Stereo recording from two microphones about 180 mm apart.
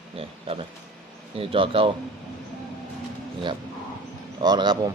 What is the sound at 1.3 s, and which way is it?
Speech, 30° right (ahead or behind).